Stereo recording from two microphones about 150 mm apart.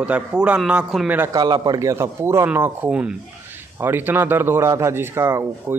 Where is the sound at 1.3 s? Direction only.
25° right (ahead or behind).